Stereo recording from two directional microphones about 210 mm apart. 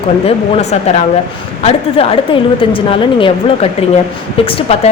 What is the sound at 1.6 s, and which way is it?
A woman's voice, 25° left (ahead or behind).